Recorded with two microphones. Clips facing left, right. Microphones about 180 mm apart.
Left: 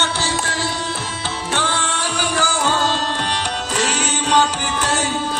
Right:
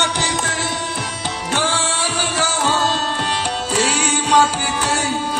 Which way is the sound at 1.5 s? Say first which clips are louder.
Right 2 dB; 10° right (ahead or behind).